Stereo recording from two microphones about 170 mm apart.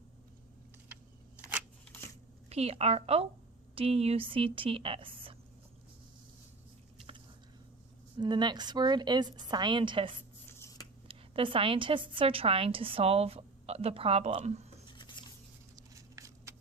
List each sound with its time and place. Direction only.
2.5 s a woman's voice: 35° right (ahead or behind)
8.2 s a woman's voice: 25° right (ahead or behind)
10.4 s a sound: 15° left (ahead or behind)
11.1 s a woman's voice: 30° right (ahead or behind)
14.8 s scissors: 25° left (ahead or behind)
15.7 s a sound: 20° right (ahead or behind)